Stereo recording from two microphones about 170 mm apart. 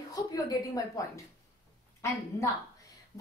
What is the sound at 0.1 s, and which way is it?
A woman's voice, 20° left (ahead or behind).